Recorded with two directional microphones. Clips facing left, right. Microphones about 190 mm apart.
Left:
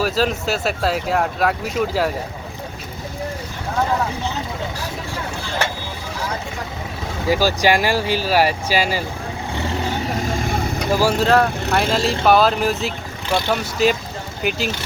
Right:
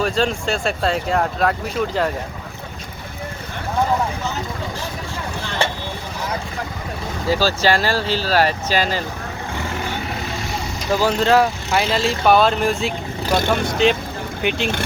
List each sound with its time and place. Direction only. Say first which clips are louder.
0.0 s speech: even; 5° left (ahead or behind)
7.3 s speech: left 1 dB; 15° left (ahead or behind)
10.2 s vehicle: left 5 dB; 50° left (ahead or behind)
11.0 s speech: right 1 dB; 5° left (ahead or behind)
13.2 s speech: right 2 dB; 45° right (ahead or behind)
13.5 s speech: even; 5° left (ahead or behind)